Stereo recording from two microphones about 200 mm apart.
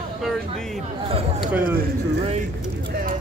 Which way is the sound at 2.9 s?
45° right (ahead or behind).